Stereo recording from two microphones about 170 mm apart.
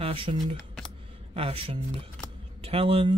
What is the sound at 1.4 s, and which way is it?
Speech, 35° right (ahead or behind).